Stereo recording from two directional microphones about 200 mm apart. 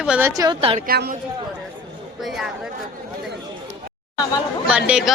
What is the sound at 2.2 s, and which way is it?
Speech, centre (ahead or behind).